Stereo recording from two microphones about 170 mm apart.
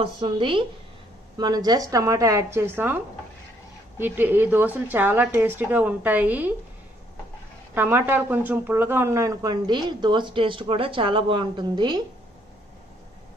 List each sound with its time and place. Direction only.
0.0 s speech: 30° right (ahead or behind); by 3.0 s 10° right (ahead or behind)
4.0 s a woman's voice: 10° right (ahead or behind)
7.7 s speech: 10° right (ahead or behind)